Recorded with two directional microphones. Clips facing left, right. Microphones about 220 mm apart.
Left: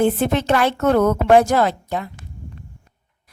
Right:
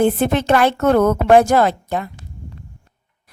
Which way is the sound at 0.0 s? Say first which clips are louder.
Right 2 dB; 55° right (ahead or behind).